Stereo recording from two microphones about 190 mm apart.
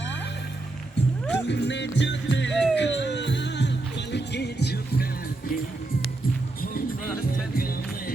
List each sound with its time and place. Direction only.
1.3 s music: 65° left (ahead or behind)
7.5 s music: 50° left (ahead or behind)